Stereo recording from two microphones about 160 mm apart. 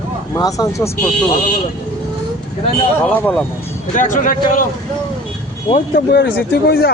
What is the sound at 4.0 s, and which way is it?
Speech, 50° left (ahead or behind).